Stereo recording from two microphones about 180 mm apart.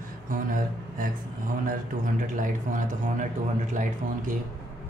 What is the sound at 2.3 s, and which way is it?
A man's voice, 45° right (ahead or behind).